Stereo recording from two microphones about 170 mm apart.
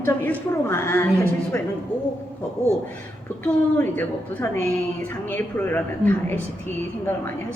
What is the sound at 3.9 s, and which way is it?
A woman's voice, 10° left (ahead or behind).